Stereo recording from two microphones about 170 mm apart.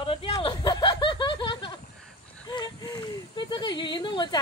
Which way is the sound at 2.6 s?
25° left (ahead or behind).